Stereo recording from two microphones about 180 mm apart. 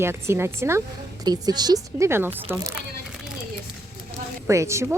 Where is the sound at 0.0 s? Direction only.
15° right (ahead or behind).